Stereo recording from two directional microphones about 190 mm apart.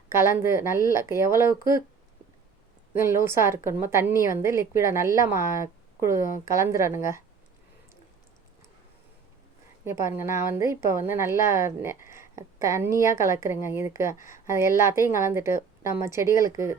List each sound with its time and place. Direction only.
0.1 s a woman's voice: 15° right (ahead or behind)
2.9 s a woman's voice: 15° right (ahead or behind)
9.8 s a woman's voice: 15° right (ahead or behind)
14.2 s speech: 45° left (ahead or behind)
14.5 s a woman's voice: 15° right (ahead or behind)